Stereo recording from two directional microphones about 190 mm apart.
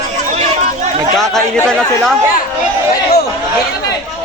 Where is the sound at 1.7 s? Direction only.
Centre (ahead or behind).